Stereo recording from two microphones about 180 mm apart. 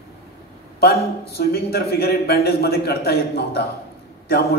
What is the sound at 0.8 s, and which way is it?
A man's voice, 60° left (ahead or behind).